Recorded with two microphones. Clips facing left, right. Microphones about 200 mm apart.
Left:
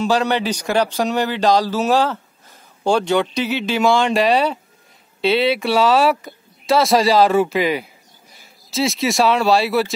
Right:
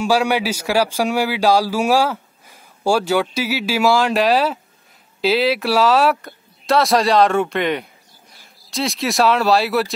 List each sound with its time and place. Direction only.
0.0 s a man's voice: 10° right (ahead or behind)